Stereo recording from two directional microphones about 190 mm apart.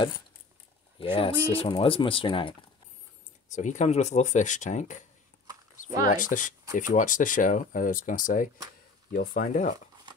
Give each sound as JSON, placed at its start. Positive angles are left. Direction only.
{"t": 0.9, "sound": "speech", "side_deg": 25}
{"t": 3.5, "sound": "speech", "side_deg": 40}
{"t": 5.5, "sound": "a sound", "side_deg": -20}
{"t": 6.0, "sound": "speech", "side_deg": 45}